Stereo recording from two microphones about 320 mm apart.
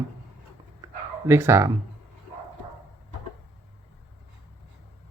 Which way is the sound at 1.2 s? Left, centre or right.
Centre.